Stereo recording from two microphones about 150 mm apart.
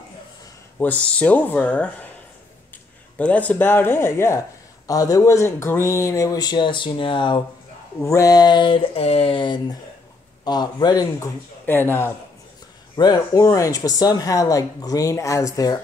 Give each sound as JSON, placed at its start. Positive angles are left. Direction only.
{"t": 0.7, "sound": "speech", "side_deg": 10}
{"t": 3.2, "sound": "speech", "side_deg": 10}
{"t": 8.0, "sound": "speech", "side_deg": 20}
{"t": 11.6, "sound": "speech", "side_deg": 15}
{"t": 12.9, "sound": "speech", "side_deg": 30}